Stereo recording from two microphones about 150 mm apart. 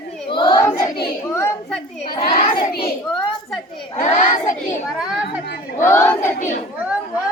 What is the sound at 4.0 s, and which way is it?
Child singing, 50° left (ahead or behind).